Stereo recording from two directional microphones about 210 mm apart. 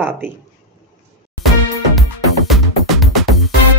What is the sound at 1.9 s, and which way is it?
Music, centre (ahead or behind).